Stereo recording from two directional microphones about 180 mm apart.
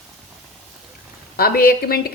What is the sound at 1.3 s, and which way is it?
Speech, 55° left (ahead or behind).